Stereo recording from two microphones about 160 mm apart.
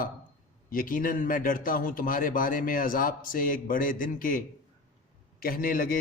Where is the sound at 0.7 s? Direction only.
60° left (ahead or behind).